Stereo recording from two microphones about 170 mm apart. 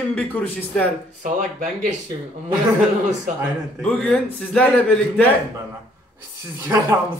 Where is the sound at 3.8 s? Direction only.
5° left (ahead or behind).